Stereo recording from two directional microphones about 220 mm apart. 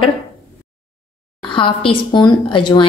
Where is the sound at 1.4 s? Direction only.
25° left (ahead or behind).